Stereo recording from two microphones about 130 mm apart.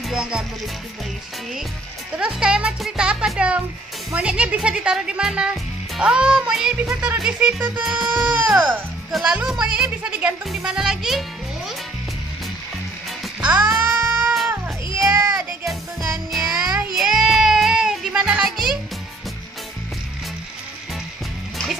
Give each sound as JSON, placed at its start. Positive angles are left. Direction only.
{"t": 0.1, "sound": "speech", "side_deg": -5}
{"t": 2.1, "sound": "speech", "side_deg": -5}
{"t": 13.4, "sound": "music", "side_deg": -10}
{"t": 15.0, "sound": "baby cry", "side_deg": -20}
{"t": 16.3, "sound": "music", "side_deg": 0}